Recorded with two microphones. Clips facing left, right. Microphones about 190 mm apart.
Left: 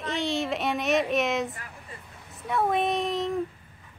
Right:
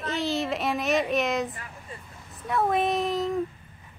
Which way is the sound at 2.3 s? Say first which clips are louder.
Right 1 dB; centre (ahead or behind).